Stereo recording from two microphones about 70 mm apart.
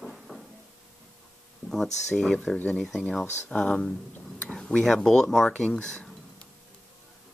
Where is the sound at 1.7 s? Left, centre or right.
Centre.